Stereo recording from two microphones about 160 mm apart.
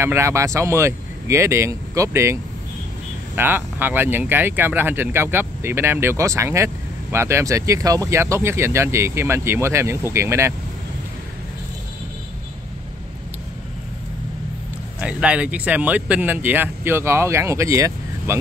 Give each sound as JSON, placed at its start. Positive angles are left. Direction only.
{"t": 0.0, "sound": "speech", "side_deg": -15}
{"t": 3.3, "sound": "speech", "side_deg": -10}
{"t": 15.0, "sound": "speech", "side_deg": -5}